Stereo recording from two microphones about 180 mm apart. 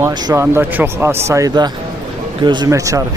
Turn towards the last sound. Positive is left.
turn(degrees=-20)  # may be behind; listen again after turning